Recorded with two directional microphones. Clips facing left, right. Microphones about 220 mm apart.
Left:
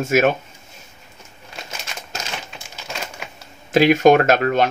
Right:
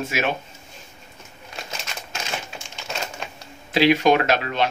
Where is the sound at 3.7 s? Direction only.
45° left (ahead or behind).